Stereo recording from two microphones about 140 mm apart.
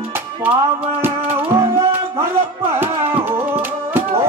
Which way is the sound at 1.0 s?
15° right (ahead or behind).